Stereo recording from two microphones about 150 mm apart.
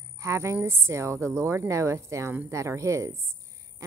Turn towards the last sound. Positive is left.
turn(degrees=-20)  # may be behind; listen again after turning